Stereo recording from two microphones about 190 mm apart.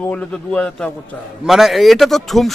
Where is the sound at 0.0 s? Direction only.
5° left (ahead or behind).